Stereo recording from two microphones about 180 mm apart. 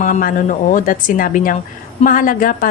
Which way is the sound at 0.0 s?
50° left (ahead or behind).